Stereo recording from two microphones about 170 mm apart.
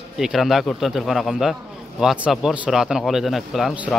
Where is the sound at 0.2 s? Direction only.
Centre (ahead or behind).